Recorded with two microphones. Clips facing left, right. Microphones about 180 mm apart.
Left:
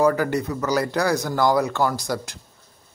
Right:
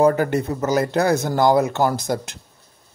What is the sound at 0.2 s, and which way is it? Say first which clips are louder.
Speech: right 3 dB; 25° right (ahead or behind).